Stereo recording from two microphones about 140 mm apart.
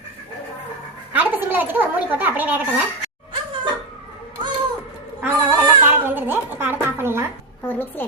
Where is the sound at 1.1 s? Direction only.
10° right (ahead or behind).